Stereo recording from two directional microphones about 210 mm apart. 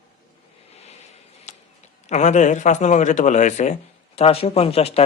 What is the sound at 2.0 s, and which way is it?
A man's voice, 35° left (ahead or behind).